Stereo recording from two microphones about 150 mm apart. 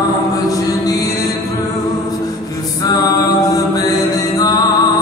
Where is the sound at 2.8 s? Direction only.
25° left (ahead or behind).